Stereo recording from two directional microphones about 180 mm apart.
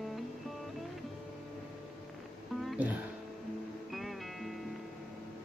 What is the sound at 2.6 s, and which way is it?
Music, 5° right (ahead or behind).